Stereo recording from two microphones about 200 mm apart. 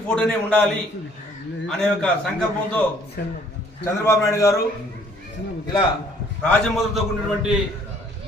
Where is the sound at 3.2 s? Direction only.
50° left (ahead or behind).